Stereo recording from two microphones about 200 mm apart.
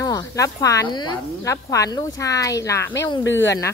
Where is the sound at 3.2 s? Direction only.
65° left (ahead or behind).